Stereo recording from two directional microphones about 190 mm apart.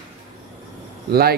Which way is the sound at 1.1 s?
55° right (ahead or behind).